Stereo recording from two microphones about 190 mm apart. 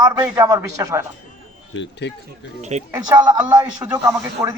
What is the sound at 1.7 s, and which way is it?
Speech, 70° left (ahead or behind).